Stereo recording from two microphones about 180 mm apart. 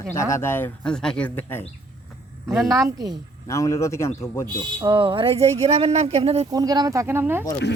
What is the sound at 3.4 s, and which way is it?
Speech, 15° left (ahead or behind).